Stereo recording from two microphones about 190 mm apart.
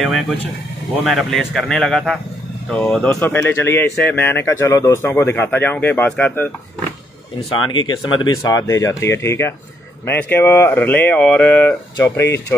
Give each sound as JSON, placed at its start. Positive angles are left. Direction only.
{"t": 1.0, "sound": "speech", "side_deg": 0}
{"t": 3.1, "sound": "speech", "side_deg": 15}
{"t": 7.5, "sound": "speech", "side_deg": 25}